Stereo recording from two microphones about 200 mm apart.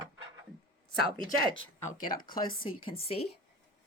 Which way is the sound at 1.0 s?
25° right (ahead or behind).